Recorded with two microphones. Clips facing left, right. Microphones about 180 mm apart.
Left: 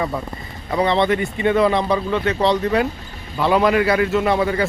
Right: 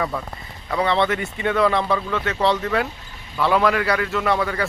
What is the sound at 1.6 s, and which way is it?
Speech, 15° left (ahead or behind).